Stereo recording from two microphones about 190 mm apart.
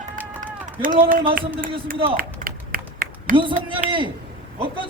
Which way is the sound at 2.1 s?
50° right (ahead or behind).